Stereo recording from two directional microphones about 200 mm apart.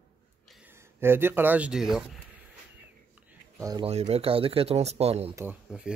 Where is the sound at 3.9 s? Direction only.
30° right (ahead or behind).